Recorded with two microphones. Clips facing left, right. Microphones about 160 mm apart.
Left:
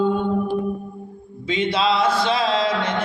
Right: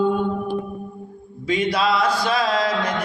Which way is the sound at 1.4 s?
25° left (ahead or behind).